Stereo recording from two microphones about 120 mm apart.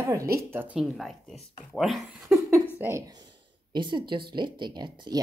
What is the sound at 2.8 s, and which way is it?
Speech, 25° right (ahead or behind).